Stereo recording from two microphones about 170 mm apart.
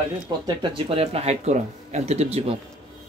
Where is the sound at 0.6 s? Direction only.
35° right (ahead or behind).